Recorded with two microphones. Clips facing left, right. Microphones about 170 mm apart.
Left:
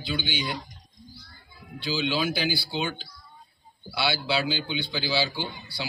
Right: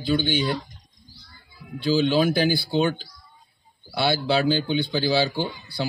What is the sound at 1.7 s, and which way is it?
Speech, 45° right (ahead or behind).